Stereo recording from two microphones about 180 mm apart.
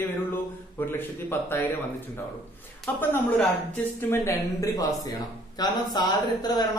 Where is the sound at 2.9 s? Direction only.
10° left (ahead or behind).